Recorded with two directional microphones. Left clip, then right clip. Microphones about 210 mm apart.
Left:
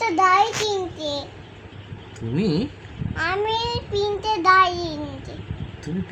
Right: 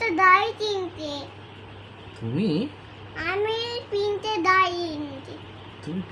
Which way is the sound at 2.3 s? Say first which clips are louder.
Left 3 dB; 25° left (ahead or behind).